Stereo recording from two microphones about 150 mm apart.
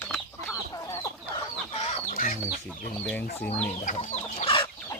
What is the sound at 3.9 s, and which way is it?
Chicken, 50° left (ahead or behind).